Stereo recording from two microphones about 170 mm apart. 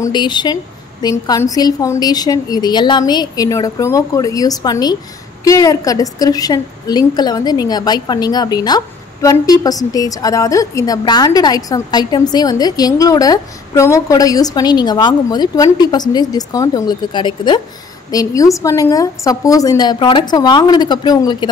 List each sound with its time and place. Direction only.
0.0 s a woman's voice: 25° left (ahead or behind)